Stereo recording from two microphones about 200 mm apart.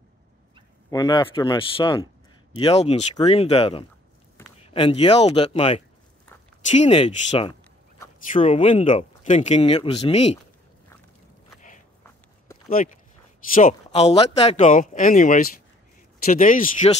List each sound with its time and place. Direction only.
0.8 s speech: 20° left (ahead or behind)
12.6 s speech: 45° left (ahead or behind)